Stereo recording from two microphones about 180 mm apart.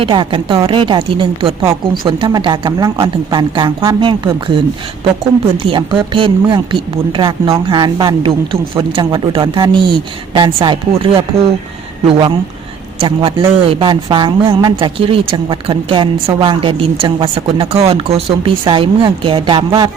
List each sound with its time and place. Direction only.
0.0 s a man's voice: 30° right (ahead or behind)
5.6 s a man's voice: 30° right (ahead or behind)
13.0 s a man's voice: 30° right (ahead or behind)